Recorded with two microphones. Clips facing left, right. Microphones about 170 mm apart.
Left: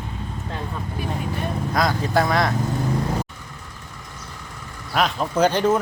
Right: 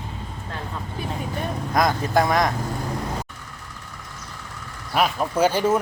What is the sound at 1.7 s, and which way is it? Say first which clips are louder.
Speech: right 1 dB; 20° right (ahead or behind).